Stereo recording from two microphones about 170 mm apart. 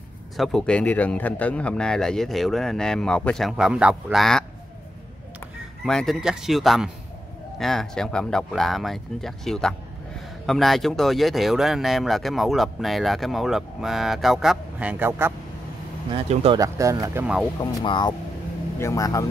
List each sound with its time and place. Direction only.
0.4 s speech: centre (ahead or behind)
5.9 s speech: 5° left (ahead or behind); by 15.3 s 15° right (ahead or behind)
16.1 s speech: 30° right (ahead or behind)
16.5 s speech: 20° right (ahead or behind)
17.8 s a man's voice: 25° left (ahead or behind)